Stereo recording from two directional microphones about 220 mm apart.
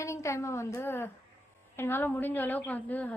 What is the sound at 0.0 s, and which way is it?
A woman's voice, 15° left (ahead or behind).